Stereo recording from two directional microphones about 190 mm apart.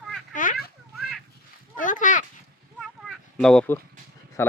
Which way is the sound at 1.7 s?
45° left (ahead or behind).